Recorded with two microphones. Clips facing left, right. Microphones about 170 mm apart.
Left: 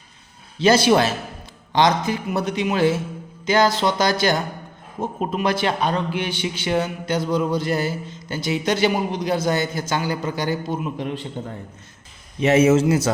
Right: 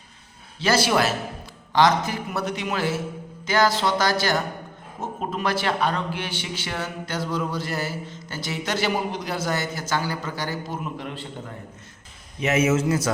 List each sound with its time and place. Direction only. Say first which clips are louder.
0.6 s a man's voice: left 5 dB; 20° left (ahead or behind)
12.4 s a man's voice: left 6 dB; 30° left (ahead or behind)